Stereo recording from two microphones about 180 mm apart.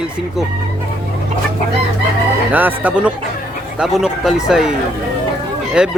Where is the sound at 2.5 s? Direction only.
10° right (ahead or behind).